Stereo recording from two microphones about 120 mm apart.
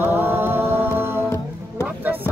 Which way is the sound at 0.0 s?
20° right (ahead or behind).